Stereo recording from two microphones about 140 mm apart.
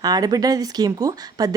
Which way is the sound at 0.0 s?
25° right (ahead or behind).